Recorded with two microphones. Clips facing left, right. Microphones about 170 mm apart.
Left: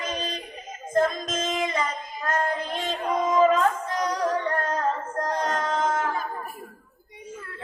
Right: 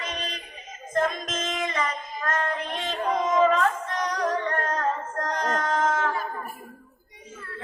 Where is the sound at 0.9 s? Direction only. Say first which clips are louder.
Left 3 dB; 30° left (ahead or behind).